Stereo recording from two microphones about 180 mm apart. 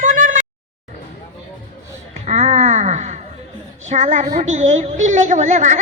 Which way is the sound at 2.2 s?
40° right (ahead or behind).